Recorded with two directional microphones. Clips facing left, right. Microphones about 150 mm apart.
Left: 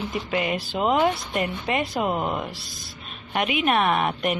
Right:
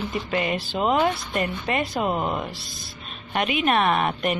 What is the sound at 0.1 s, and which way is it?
Speech, 10° left (ahead or behind).